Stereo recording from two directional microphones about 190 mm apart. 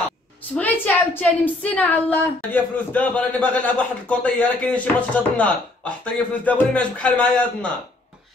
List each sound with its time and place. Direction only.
0.6 s a woman's voice: 10° left (ahead or behind)